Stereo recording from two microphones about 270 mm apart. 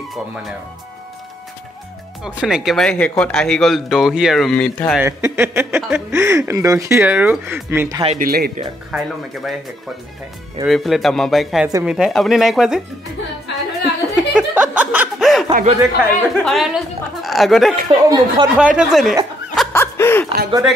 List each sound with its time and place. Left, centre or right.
2.2 s speech: centre
5.0 s speech: centre
8.0 s speech: right
8.9 s speech: centre
10.7 s speech: centre
13.8 s chuckle: centre
15.8 s speech: centre
18.0 s speech: centre
19.5 s snicker: centre